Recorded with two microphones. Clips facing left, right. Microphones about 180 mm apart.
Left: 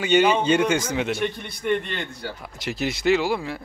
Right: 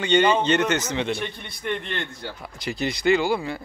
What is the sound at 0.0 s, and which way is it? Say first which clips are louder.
A man's voice: left 1 dB; 10° left (ahead or behind).